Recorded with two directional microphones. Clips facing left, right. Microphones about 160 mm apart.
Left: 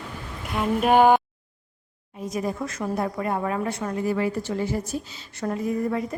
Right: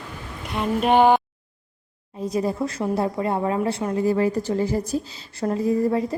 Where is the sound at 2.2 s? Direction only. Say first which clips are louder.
Right 4 dB; 30° right (ahead or behind).